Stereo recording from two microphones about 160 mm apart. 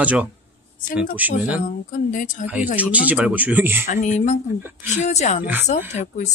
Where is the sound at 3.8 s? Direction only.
50° left (ahead or behind).